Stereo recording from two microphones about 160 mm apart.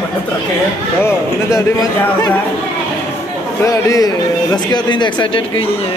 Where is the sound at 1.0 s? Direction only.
15° left (ahead or behind).